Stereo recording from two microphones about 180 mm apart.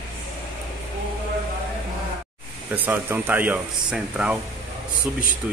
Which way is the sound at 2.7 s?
10° right (ahead or behind).